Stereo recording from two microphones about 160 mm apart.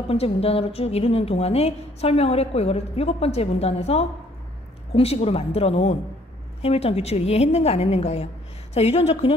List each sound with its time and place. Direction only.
0.1 s a woman's voice: 40° left (ahead or behind)